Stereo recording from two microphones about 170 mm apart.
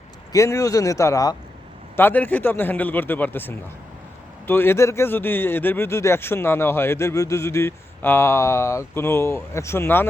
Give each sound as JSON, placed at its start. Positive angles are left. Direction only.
{"t": 0.3, "sound": "a man's voice", "side_deg": 20}